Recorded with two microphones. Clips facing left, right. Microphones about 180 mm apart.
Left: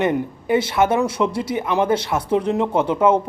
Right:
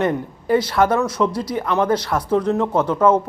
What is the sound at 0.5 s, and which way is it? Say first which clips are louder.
Speech: right 1 dB; 25° left (ahead or behind).